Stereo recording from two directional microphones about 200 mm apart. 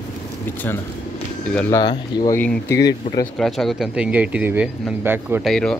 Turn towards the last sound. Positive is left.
turn(degrees=5)  # may be behind; listen again after turning